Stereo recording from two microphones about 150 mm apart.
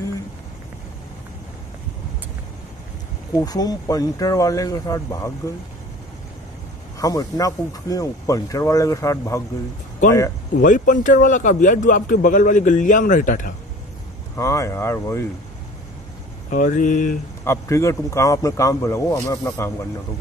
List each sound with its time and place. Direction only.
3.3 s speech: 25° left (ahead or behind)
7.0 s speech: 25° left (ahead or behind)
10.6 s a man's voice: 60° left (ahead or behind)
14.3 s speech: 20° left (ahead or behind)
16.4 s a man's voice: 60° left (ahead or behind)
17.5 s speech: 20° left (ahead or behind)